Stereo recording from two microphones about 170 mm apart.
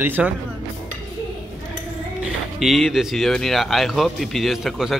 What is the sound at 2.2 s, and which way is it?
Speech, centre (ahead or behind).